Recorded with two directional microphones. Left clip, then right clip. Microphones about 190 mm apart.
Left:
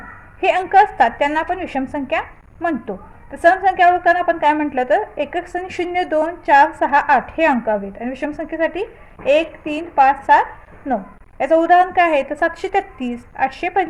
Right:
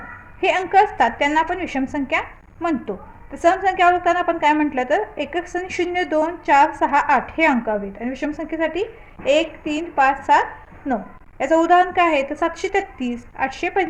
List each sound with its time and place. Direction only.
0.4 s a woman's voice: 20° left (ahead or behind)